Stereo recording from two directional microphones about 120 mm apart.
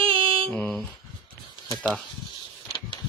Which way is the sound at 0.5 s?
5° left (ahead or behind).